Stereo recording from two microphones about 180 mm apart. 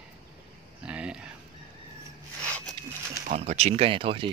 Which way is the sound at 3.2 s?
40° right (ahead or behind).